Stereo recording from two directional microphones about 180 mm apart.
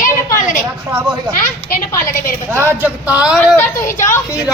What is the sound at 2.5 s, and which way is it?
Speech, 10° right (ahead or behind).